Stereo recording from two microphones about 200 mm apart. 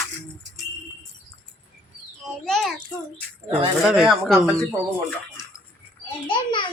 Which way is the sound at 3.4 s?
25° right (ahead or behind).